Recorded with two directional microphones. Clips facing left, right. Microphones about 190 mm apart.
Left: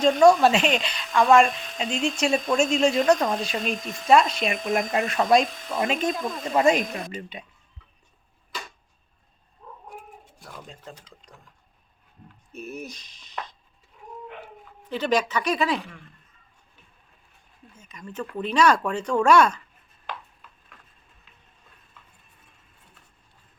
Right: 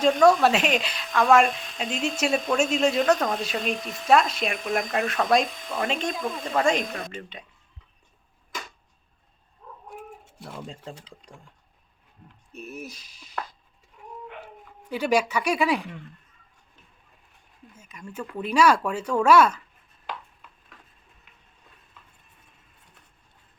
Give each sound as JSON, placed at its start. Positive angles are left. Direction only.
{"t": 0.3, "sound": "speech", "side_deg": -5}
{"t": 10.2, "sound": "speech", "side_deg": -25}
{"t": 12.5, "sound": "speech", "side_deg": 0}
{"t": 14.8, "sound": "speech", "side_deg": -10}
{"t": 17.7, "sound": "speech", "side_deg": -10}